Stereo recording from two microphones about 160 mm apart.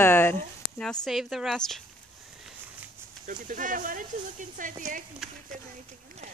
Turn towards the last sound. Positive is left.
turn(degrees=-50)  # may be behind; listen again after turning